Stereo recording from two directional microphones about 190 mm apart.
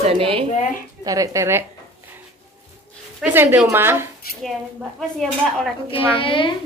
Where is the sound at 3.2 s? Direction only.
10° right (ahead or behind).